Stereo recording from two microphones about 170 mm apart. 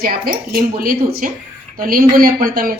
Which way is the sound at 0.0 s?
60° right (ahead or behind).